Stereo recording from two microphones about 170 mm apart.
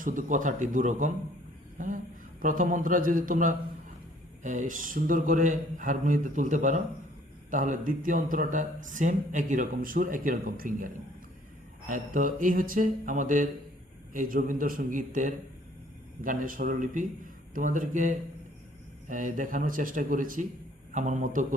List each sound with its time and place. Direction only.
0.0 s a man's voice: 50° right (ahead or behind)